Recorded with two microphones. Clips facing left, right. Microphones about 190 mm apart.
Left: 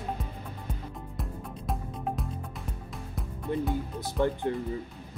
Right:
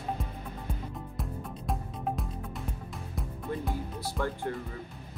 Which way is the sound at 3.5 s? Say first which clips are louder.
Left 5 dB; 20° left (ahead or behind).